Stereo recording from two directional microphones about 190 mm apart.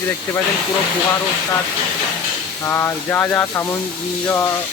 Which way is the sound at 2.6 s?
15° left (ahead or behind).